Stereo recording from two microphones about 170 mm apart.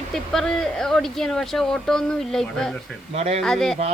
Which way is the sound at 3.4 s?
5° left (ahead or behind).